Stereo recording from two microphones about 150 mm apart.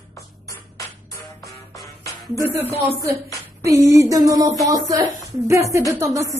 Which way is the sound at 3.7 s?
20° right (ahead or behind).